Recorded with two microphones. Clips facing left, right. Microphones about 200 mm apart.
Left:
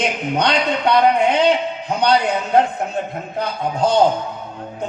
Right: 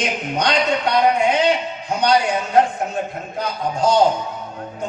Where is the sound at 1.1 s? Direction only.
60° left (ahead or behind).